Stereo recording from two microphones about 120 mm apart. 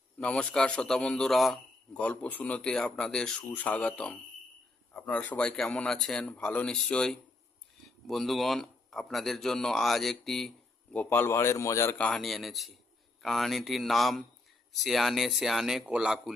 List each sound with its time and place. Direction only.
0.2 s a man's voice: 10° left (ahead or behind)
10.9 s a man's voice: 15° left (ahead or behind)
11.9 s speech: 5° left (ahead or behind)